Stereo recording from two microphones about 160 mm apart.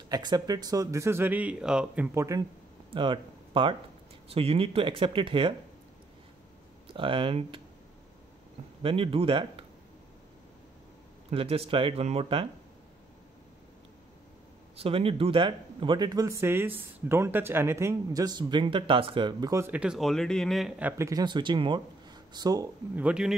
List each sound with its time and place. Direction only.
0.1 s speech: 25° right (ahead or behind); by 2.0 s 5° right (ahead or behind)
2.1 s speech: 20° right (ahead or behind)
2.9 s speech: 30° right (ahead or behind)
6.9 s speech: 35° right (ahead or behind)
8.8 s speech: 35° right (ahead or behind)
11.2 s speech: 40° right (ahead or behind)
14.8 s speech: 35° right (ahead or behind)
19.7 s speech: 5° right (ahead or behind)
21.0 s speech: 25° right (ahead or behind)
22.9 s speech: 5° right (ahead or behind)